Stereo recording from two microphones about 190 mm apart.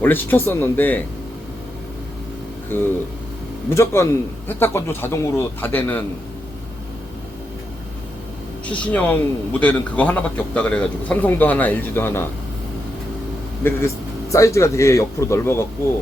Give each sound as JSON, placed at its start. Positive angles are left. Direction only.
{"t": 0.0, "sound": "a man's voice", "side_deg": 10}
{"t": 2.7, "sound": "a man's voice", "side_deg": 10}
{"t": 8.6, "sound": "a man's voice", "side_deg": 5}
{"t": 14.3, "sound": "a man's voice", "side_deg": 15}